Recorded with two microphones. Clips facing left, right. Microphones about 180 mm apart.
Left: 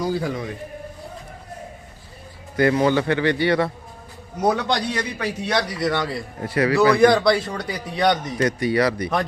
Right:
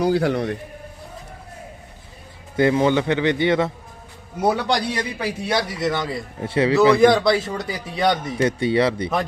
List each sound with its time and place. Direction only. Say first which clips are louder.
0.0 s a man's voice: right 5 dB; 70° right (ahead or behind)
2.6 s a man's voice: right 1 dB; 20° right (ahead or behind)
4.4 s speech: right 1 dB; 10° right (ahead or behind)
6.4 s a man's voice: right 2 dB; 25° right (ahead or behind)
6.9 s a man's voice: right 1 dB; centre (ahead or behind)
8.4 s a man's voice: right 1 dB; 25° right (ahead or behind)